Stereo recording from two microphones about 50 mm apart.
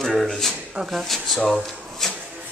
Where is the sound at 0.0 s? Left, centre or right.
Centre.